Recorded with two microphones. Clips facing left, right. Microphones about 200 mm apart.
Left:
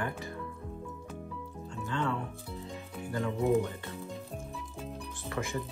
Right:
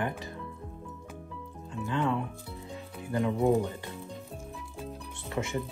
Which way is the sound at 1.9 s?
15° right (ahead or behind).